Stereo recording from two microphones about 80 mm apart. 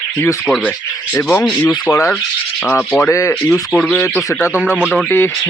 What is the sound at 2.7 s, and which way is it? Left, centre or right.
Speech, centre.